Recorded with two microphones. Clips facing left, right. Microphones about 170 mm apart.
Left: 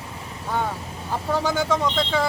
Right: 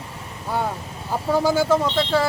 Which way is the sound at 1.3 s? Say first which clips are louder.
Right 5 dB; 10° right (ahead or behind).